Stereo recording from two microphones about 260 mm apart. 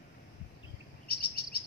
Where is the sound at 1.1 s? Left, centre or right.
Left.